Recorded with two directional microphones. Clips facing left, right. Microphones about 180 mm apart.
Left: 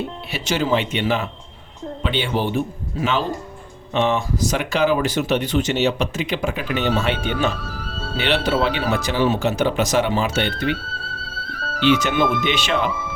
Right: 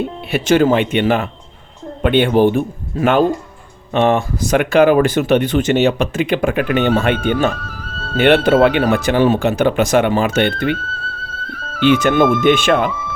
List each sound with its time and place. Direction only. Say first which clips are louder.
0.3 s speech: right 9 dB; 55° right (ahead or behind)
11.8 s speech: right 5 dB; 55° right (ahead or behind)